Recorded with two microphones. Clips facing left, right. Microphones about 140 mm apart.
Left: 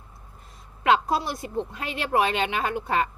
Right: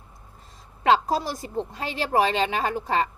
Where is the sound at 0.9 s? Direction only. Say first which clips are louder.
Right 1 dB; 35° right (ahead or behind).